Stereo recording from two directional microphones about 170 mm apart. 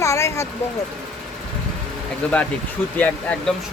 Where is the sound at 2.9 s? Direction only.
10° left (ahead or behind).